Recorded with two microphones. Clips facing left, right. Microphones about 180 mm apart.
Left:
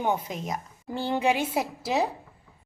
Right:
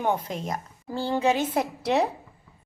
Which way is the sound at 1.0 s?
15° left (ahead or behind).